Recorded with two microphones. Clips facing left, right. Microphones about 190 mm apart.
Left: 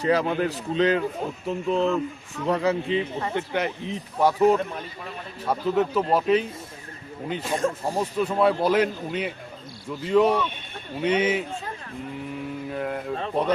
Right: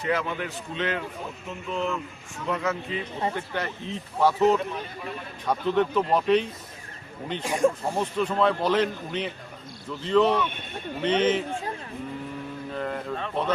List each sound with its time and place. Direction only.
0.0 s a man's voice: 35° left (ahead or behind)
3.3 s a man's voice: 20° left (ahead or behind)
7.4 s speech: 15° right (ahead or behind)
7.9 s speech: 10° left (ahead or behind)
12.7 s speech: 5° left (ahead or behind)